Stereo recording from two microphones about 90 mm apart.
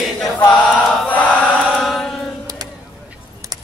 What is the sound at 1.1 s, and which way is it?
Chant, 15° left (ahead or behind).